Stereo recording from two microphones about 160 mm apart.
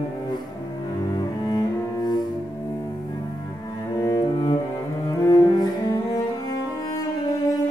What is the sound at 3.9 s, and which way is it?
Cello, 20° left (ahead or behind).